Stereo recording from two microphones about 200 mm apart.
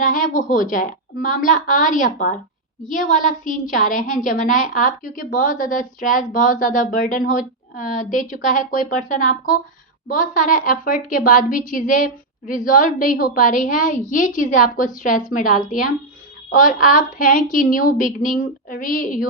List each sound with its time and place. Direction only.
0.0 s a woman's voice: 40° left (ahead or behind)